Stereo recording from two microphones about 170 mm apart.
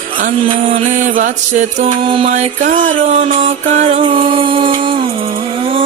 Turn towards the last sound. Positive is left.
turn(degrees=-35)  # may be behind; listen again after turning